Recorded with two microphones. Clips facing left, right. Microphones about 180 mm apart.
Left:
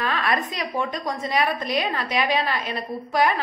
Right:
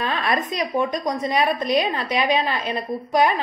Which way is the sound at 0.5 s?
20° right (ahead or behind).